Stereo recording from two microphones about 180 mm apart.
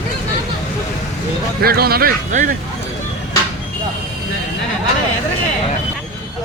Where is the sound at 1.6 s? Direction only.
60° right (ahead or behind).